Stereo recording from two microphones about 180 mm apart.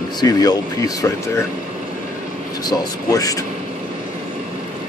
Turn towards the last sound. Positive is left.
turn(degrees=20)  # may be behind; listen again after turning